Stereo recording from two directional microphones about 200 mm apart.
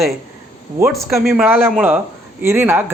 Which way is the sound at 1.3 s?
10° right (ahead or behind).